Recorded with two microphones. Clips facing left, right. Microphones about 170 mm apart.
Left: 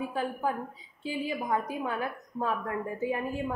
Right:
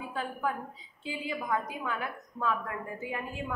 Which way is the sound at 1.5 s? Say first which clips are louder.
Left 1 dB; 35° left (ahead or behind).